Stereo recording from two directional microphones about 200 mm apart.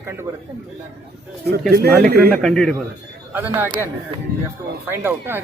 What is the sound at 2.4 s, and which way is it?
Speech, centre (ahead or behind).